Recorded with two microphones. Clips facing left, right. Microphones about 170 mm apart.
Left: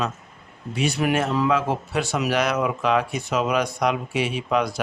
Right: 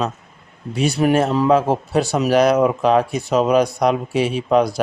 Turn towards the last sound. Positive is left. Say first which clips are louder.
# right 7 dB
turn(degrees=-35)  # may be behind; listen again after turning